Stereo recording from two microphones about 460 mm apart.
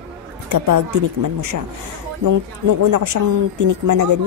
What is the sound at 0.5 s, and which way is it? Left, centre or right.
Speech, right.